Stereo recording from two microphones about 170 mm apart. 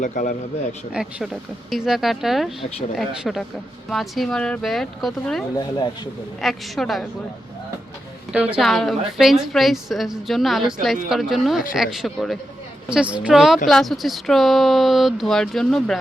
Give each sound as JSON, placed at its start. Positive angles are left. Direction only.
{"t": 0.0, "sound": "a man's voice", "side_deg": 50}
{"t": 0.9, "sound": "a woman's voice", "side_deg": 0}
{"t": 5.5, "sound": "speech", "side_deg": 25}
{"t": 6.4, "sound": "a woman's voice", "side_deg": 0}
{"t": 8.3, "sound": "a woman's voice", "side_deg": -5}